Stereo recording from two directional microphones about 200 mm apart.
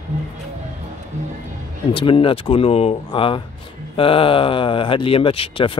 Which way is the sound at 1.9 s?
25° left (ahead or behind).